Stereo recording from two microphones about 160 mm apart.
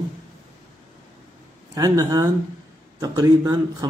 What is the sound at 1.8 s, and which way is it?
Speech, 20° right (ahead or behind).